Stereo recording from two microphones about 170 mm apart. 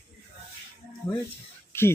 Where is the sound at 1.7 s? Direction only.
15° left (ahead or behind).